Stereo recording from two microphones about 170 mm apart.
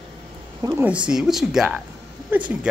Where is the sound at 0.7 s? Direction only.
5° right (ahead or behind).